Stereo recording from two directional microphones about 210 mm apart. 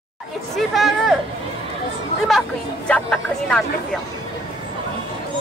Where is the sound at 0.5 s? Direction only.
Centre (ahead or behind).